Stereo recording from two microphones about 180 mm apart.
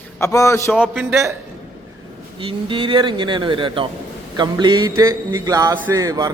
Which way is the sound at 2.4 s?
30° right (ahead or behind).